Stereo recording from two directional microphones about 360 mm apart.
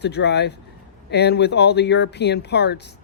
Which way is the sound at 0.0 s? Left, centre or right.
Left.